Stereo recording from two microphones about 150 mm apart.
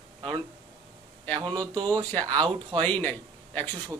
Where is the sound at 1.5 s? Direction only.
25° right (ahead or behind).